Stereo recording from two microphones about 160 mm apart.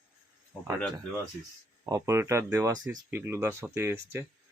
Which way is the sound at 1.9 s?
20° right (ahead or behind).